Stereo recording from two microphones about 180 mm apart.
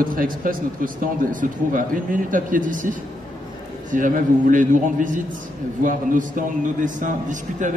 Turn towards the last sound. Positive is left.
turn(degrees=-45)  # may be behind; listen again after turning